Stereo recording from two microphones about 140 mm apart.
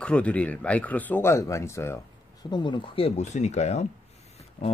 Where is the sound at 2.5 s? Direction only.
35° left (ahead or behind); by 3.9 s 55° left (ahead or behind).